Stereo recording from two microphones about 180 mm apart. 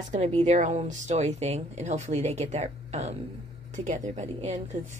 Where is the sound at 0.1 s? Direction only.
40° right (ahead or behind).